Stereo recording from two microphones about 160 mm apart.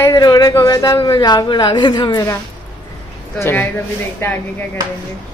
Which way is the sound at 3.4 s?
15° left (ahead or behind).